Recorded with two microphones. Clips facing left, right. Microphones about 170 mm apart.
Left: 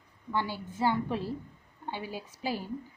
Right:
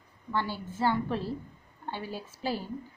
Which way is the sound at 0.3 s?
15° left (ahead or behind).